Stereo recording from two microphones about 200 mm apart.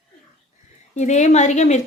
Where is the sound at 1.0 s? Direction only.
35° left (ahead or behind).